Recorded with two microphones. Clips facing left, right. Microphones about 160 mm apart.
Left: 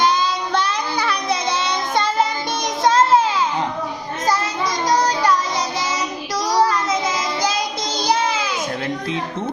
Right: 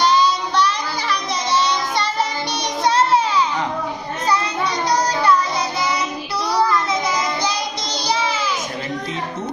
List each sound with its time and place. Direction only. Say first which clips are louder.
0.0 s child singing: right 2 dB; 50° left (ahead or behind)